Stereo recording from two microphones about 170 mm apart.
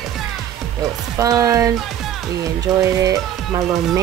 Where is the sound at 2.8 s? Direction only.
20° right (ahead or behind).